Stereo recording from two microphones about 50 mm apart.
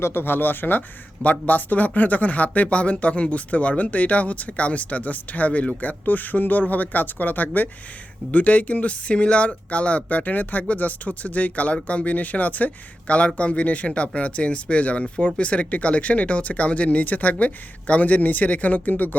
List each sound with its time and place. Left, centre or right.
0.0 s speech: left